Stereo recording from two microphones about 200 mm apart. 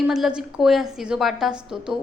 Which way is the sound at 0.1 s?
5° right (ahead or behind).